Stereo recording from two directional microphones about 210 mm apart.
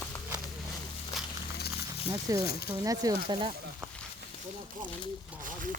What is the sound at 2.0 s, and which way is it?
Speech, 15° right (ahead or behind).